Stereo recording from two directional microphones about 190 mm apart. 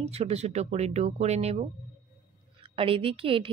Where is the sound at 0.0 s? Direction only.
35° right (ahead or behind).